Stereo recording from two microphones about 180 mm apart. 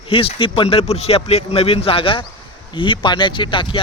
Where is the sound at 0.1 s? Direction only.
30° left (ahead or behind).